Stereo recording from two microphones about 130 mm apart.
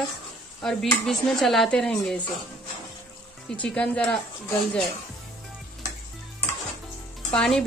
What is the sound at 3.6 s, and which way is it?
Speech, 10° left (ahead or behind).